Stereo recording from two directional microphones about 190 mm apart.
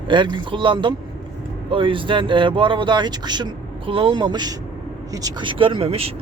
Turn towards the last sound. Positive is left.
turn(degrees=-30)  # may be behind; listen again after turning